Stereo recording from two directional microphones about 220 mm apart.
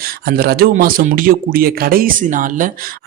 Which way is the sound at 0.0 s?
45° right (ahead or behind).